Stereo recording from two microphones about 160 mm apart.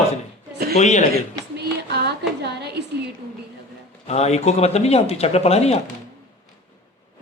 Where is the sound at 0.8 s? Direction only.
45° left (ahead or behind).